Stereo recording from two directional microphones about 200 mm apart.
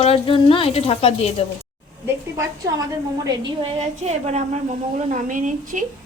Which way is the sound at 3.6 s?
30° right (ahead or behind).